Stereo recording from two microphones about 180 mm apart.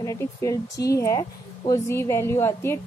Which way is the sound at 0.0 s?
15° left (ahead or behind).